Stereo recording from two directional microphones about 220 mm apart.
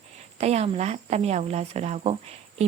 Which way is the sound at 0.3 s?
30° right (ahead or behind).